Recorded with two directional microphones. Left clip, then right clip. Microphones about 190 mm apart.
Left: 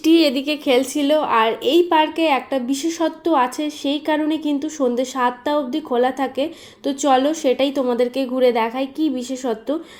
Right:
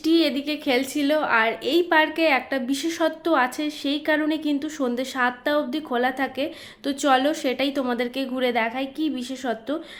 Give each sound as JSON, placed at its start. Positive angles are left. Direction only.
{"t": 0.0, "sound": "a sound", "side_deg": -35}
{"t": 0.3, "sound": "a woman's voice", "side_deg": -30}
{"t": 0.9, "sound": "a woman's voice", "side_deg": 5}